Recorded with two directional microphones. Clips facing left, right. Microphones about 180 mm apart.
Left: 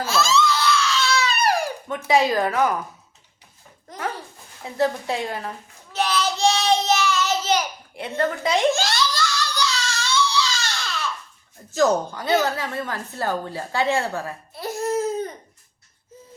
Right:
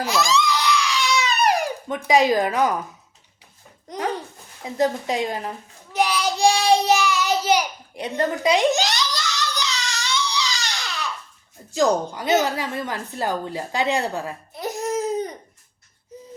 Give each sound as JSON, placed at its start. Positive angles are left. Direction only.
{"t": 0.0, "sound": "crying", "side_deg": -15}
{"t": 2.0, "sound": "speech", "side_deg": -15}
{"t": 3.8, "sound": "babbling", "side_deg": -20}
{"t": 4.6, "sound": "a sound", "side_deg": -15}
{"t": 11.7, "sound": "a woman's voice", "side_deg": -15}